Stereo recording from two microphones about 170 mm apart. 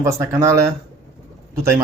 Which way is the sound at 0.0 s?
15° right (ahead or behind).